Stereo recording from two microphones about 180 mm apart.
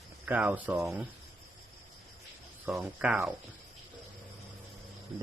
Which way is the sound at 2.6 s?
5° right (ahead or behind).